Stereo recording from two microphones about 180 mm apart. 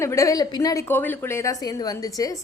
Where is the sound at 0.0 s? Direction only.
15° left (ahead or behind).